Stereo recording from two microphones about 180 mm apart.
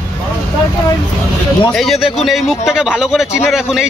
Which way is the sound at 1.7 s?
Centre (ahead or behind).